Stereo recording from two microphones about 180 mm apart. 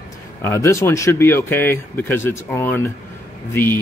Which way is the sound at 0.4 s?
15° left (ahead or behind).